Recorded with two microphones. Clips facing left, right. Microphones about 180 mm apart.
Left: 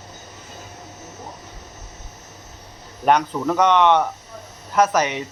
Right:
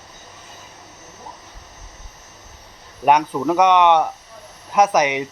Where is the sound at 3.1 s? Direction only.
10° right (ahead or behind).